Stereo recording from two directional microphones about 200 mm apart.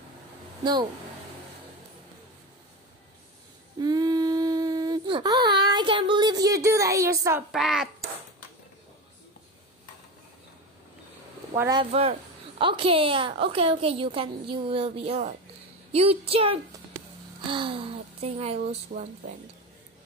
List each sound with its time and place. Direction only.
3.8 s a sound: 20° right (ahead or behind)
7.5 s a child's voice: centre (ahead or behind)
11.5 s speech: 15° right (ahead or behind)
11.8 s a woman's voice: 30° right (ahead or behind)